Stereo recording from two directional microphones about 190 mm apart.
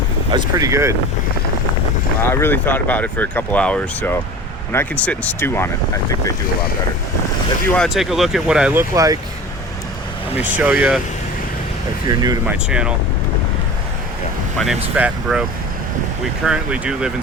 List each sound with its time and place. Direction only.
0.3 s speech: 20° right (ahead or behind)
2.2 s speech: 10° left (ahead or behind)
7.8 s speech: centre (ahead or behind)
10.3 s speech: 10° right (ahead or behind)
12.0 s speech: 20° right (ahead or behind)
12.5 s speech: 5° right (ahead or behind)
14.9 s speech: 5° right (ahead or behind)